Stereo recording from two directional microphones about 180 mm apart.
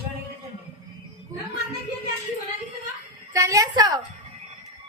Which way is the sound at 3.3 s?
20° right (ahead or behind).